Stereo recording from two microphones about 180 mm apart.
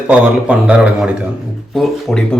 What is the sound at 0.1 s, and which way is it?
A man's voice, 5° right (ahead or behind).